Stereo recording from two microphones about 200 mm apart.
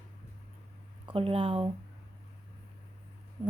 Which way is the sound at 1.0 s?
30° right (ahead or behind).